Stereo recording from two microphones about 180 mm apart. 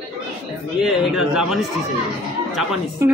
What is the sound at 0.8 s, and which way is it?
Speech, 5° right (ahead or behind).